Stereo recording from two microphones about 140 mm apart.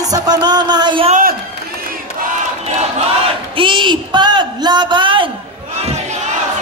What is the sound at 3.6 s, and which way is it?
A man's voice, 35° right (ahead or behind).